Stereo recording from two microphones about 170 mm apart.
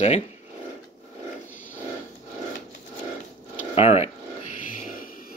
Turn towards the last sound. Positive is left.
turn(degrees=50)  # may be behind; listen again after turning